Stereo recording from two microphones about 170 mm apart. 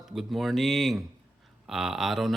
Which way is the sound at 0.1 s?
Centre (ahead or behind).